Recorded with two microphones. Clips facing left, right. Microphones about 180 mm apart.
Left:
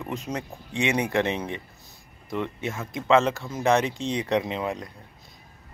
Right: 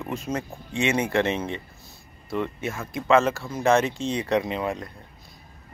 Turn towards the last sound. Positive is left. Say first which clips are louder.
# right 1 dB
turn(degrees=20)  # may be behind; listen again after turning